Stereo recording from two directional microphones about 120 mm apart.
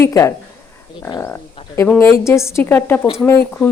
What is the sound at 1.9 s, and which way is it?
A woman's voice, 20° left (ahead or behind).